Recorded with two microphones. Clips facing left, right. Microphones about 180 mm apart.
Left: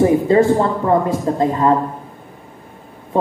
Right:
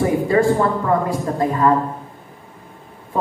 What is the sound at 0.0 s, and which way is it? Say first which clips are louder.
Speech: left 4 dB; 25° left (ahead or behind).